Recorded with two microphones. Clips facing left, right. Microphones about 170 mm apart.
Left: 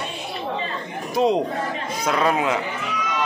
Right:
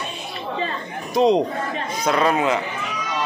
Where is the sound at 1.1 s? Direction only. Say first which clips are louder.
Right 3 dB; 5° left (ahead or behind).